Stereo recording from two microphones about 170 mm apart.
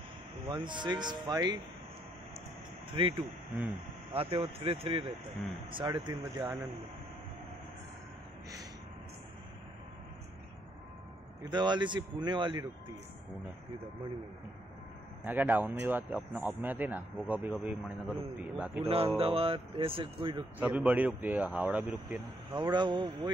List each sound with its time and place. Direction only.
0.5 s speech: 25° right (ahead or behind)
2.9 s speech: 30° right (ahead or behind)
11.5 s speech: 25° right (ahead or behind)
15.2 s a man's voice: 10° right (ahead or behind)
18.9 s speech: 35° right (ahead or behind)
20.5 s a man's voice: 10° right (ahead or behind)
22.5 s speech: 25° right (ahead or behind)